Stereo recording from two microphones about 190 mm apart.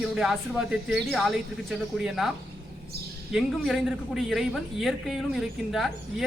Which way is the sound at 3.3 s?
Centre (ahead or behind).